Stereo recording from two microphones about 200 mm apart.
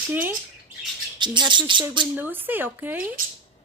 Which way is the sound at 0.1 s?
10° right (ahead or behind).